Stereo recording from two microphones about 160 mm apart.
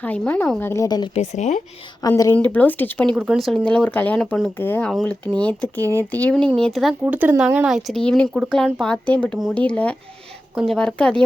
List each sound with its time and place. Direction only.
0.0 s speech: 10° left (ahead or behind)
0.7 s a woman's voice: 20° left (ahead or behind)
1.1 s speech: 45° left (ahead or behind)
2.0 s a woman's voice: 20° left (ahead or behind); by 6.9 s centre (ahead or behind)
7.0 s speech: 10° right (ahead or behind)
7.9 s speech: 5° left (ahead or behind)